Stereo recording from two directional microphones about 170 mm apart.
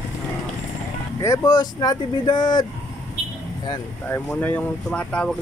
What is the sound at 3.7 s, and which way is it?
Speech, 10° left (ahead or behind).